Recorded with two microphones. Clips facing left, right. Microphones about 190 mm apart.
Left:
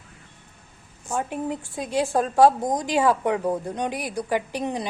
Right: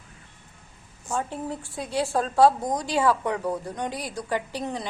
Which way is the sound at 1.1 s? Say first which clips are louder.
Left 3 dB; 15° left (ahead or behind).